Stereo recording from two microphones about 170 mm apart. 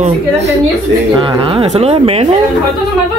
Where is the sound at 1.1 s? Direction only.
30° right (ahead or behind).